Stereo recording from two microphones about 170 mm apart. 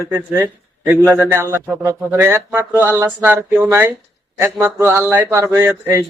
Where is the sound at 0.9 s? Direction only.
15° right (ahead or behind).